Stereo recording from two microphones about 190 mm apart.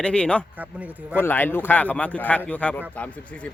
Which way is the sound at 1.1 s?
10° left (ahead or behind).